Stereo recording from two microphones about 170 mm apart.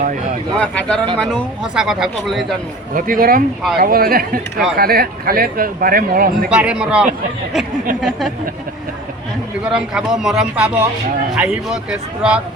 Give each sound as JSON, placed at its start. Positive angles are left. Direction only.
{"t": 0.5, "sound": "speech", "side_deg": 5}
{"t": 2.9, "sound": "speech", "side_deg": -55}
{"t": 6.5, "sound": "speech", "side_deg": -5}
{"t": 9.6, "sound": "speech", "side_deg": -5}